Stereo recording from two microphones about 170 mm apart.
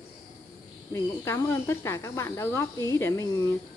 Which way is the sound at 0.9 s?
15° left (ahead or behind).